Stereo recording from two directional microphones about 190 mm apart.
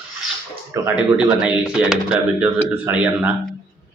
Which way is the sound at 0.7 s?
15° right (ahead or behind).